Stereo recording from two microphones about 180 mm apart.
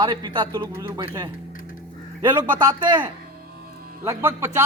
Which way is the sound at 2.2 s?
20° right (ahead or behind).